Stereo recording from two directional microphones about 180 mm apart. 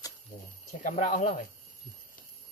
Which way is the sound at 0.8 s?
45° left (ahead or behind).